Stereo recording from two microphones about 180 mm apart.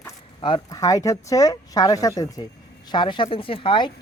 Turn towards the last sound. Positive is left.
turn(degrees=25)  # may be behind; listen again after turning